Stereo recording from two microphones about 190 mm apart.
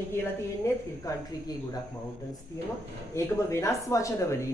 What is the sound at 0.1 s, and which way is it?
Speech, 15° left (ahead or behind).